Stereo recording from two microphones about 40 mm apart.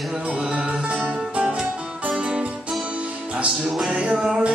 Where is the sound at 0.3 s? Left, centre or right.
Right.